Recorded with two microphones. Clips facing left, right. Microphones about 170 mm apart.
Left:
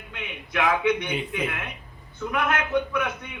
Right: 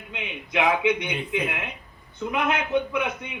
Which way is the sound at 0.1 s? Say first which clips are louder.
Right 3 dB; 20° right (ahead or behind).